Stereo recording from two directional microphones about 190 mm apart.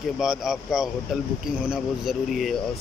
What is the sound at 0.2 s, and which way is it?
Speech, centre (ahead or behind).